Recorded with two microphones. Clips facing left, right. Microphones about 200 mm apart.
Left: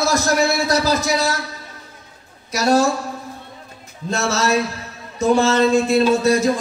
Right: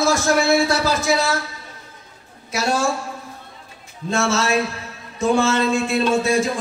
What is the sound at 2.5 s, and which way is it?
Speech, 40° left (ahead or behind).